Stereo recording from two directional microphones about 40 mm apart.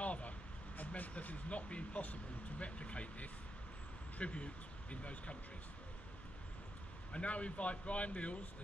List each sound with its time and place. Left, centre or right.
0.0 s vehicle: left
2.6 s a man's voice: left
7.1 s a man's voice: left